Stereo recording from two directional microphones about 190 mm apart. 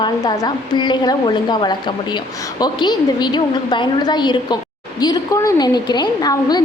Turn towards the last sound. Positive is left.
turn(degrees=20)  # may be behind; listen again after turning